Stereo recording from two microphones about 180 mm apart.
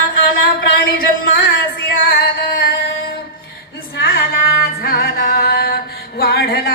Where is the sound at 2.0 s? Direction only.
55° left (ahead or behind).